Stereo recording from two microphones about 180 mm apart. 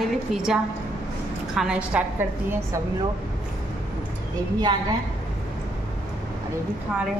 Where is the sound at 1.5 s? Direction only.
5° right (ahead or behind).